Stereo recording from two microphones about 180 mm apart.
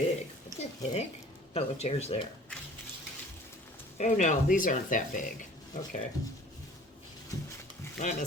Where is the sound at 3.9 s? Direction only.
45° left (ahead or behind).